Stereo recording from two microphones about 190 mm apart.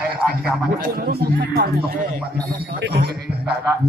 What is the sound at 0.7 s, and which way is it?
A man's voice, 50° right (ahead or behind).